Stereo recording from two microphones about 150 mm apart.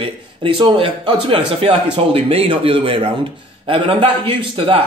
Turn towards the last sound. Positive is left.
turn(degrees=-35)  # may be behind; listen again after turning